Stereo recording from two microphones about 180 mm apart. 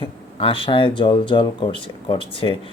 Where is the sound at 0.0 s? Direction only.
30° left (ahead or behind).